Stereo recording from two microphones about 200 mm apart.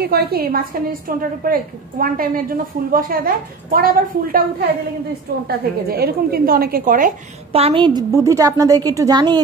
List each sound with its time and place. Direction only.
0.0 s a woman's voice: 50° right (ahead or behind)
5.5 s a woman's voice: 50° right (ahead or behind)
7.5 s a woman's voice: 25° right (ahead or behind)